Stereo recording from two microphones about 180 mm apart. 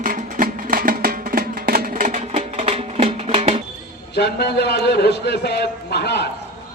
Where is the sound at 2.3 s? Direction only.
35° right (ahead or behind).